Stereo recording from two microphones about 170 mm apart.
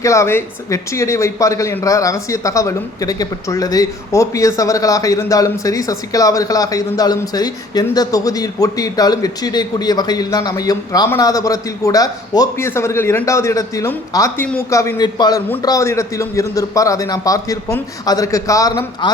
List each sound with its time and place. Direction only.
0.0 s speech: 15° left (ahead or behind)